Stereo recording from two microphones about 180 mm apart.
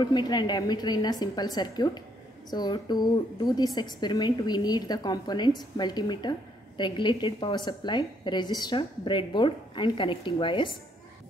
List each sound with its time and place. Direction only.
0.0 s a woman's voice: 25° left (ahead or behind)